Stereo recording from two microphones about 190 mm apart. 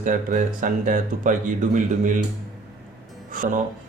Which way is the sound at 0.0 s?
40° right (ahead or behind).